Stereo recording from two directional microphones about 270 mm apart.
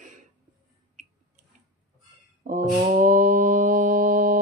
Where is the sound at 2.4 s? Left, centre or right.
Right.